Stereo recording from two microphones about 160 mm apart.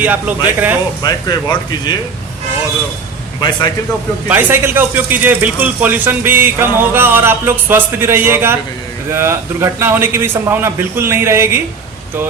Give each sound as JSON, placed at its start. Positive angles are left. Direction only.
{"t": 0.0, "sound": "speech", "side_deg": -10}
{"t": 1.0, "sound": "speech", "side_deg": 25}
{"t": 4.3, "sound": "speech", "side_deg": -10}